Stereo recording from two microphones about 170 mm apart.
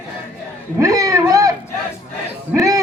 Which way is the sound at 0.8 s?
20° right (ahead or behind).